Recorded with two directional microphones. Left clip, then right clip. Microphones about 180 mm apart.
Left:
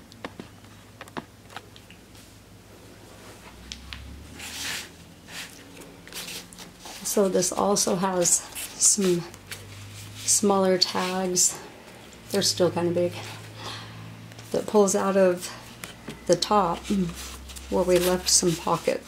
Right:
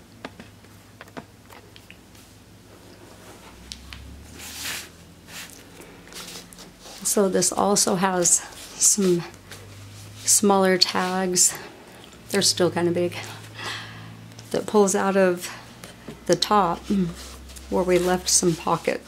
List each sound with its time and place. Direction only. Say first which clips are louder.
3.6 s a sound: left 1 dB; 5° right (ahead or behind)
7.0 s a woman's voice: right 2 dB; 20° right (ahead or behind)
10.2 s speech: right 3 dB; 20° right (ahead or behind)
16.7 s speech: right 2 dB; 5° left (ahead or behind)
17.6 s speech: right 1 dB; 15° right (ahead or behind)